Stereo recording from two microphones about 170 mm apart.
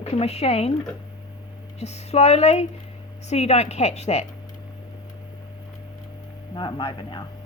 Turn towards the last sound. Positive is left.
turn(degrees=25)  # may be behind; listen again after turning